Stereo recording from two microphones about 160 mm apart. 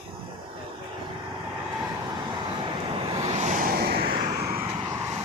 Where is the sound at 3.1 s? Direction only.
45° right (ahead or behind); by 4.6 s 70° right (ahead or behind).